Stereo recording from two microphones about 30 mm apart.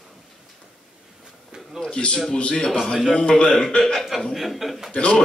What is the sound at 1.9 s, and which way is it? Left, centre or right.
A man's voice, left.